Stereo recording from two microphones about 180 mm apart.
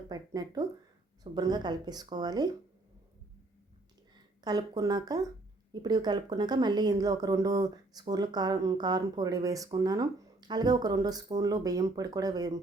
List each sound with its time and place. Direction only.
0.1 s speech: 20° right (ahead or behind)
4.4 s speech: 20° right (ahead or behind)